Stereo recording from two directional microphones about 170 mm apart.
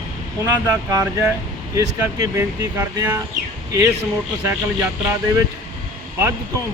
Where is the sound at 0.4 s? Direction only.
20° right (ahead or behind).